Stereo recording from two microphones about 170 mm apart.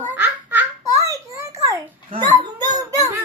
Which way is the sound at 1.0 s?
20° right (ahead or behind).